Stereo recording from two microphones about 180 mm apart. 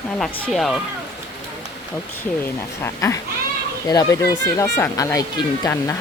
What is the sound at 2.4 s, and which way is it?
Speech, 15° left (ahead or behind).